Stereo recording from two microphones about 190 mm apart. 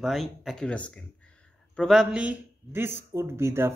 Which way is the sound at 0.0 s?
Centre (ahead or behind).